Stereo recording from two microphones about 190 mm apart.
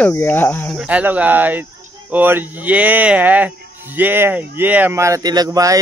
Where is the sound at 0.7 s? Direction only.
5° right (ahead or behind).